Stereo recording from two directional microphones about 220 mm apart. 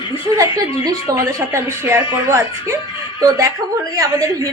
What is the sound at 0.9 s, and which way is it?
Speech, 15° right (ahead or behind).